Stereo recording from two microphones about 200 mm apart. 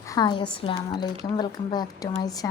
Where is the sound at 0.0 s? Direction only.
20° left (ahead or behind).